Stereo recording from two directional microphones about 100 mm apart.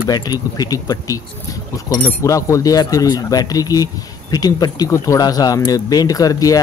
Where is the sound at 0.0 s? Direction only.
40° left (ahead or behind).